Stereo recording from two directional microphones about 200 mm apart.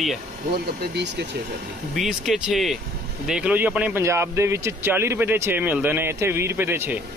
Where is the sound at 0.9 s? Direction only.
60° right (ahead or behind).